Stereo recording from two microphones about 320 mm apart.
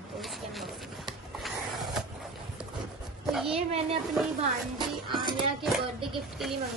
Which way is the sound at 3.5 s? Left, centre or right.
Centre.